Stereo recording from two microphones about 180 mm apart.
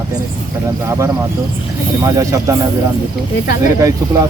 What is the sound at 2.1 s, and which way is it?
Speech, 15° right (ahead or behind).